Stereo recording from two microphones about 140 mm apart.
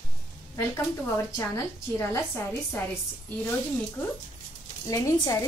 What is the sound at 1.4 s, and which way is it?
Speech, 20° left (ahead or behind).